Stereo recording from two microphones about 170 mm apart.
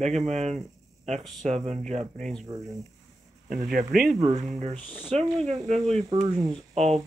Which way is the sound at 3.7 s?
60° right (ahead or behind).